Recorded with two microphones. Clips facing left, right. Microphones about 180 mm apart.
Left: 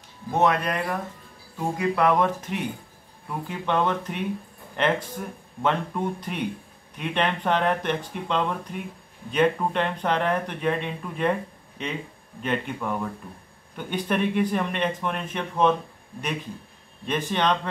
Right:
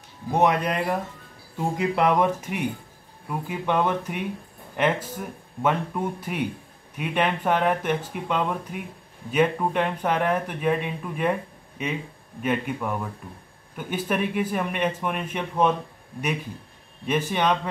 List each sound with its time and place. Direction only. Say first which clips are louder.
0.3 s speech: right 1 dB; 15° right (ahead or behind)
17.0 s speech: right 1 dB; 10° right (ahead or behind)